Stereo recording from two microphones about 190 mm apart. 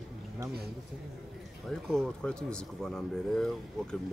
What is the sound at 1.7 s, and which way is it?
Speech, 5° left (ahead or behind).